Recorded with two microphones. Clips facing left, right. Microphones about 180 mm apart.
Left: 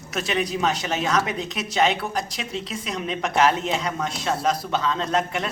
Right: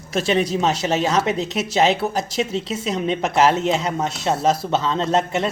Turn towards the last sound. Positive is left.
turn(degrees=-25)  # may be behind; listen again after turning